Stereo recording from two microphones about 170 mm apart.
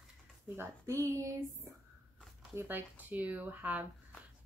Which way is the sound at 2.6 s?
10° right (ahead or behind).